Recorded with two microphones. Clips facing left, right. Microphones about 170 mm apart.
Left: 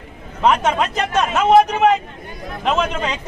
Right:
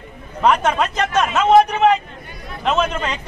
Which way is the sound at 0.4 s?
5° left (ahead or behind).